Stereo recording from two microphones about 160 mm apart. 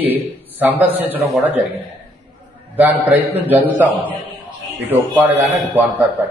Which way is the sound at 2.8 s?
10° right (ahead or behind).